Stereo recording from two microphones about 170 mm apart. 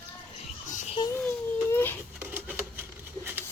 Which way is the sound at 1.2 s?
10° left (ahead or behind).